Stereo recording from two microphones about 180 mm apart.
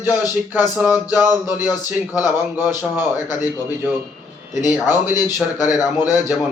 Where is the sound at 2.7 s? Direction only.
10° right (ahead or behind).